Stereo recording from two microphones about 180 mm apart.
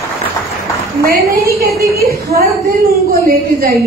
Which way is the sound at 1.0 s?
55° right (ahead or behind).